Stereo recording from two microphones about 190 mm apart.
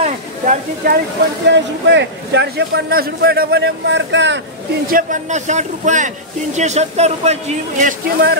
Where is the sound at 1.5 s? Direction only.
70° right (ahead or behind).